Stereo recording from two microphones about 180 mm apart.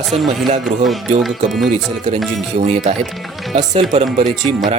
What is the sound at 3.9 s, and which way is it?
Speech, 40° right (ahead or behind).